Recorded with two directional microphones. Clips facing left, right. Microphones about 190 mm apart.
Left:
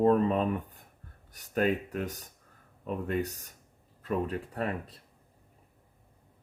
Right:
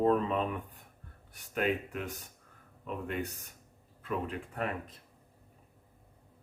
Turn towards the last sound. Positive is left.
turn(degrees=35)  # may be behind; listen again after turning